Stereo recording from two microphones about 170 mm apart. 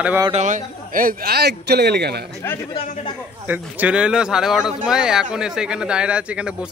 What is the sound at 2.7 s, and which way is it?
Speech, 30° left (ahead or behind).